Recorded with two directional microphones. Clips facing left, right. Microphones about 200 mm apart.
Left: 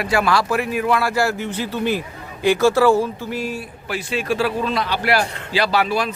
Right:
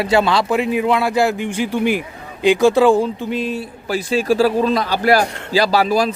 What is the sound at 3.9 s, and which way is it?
A man's voice, 35° right (ahead or behind).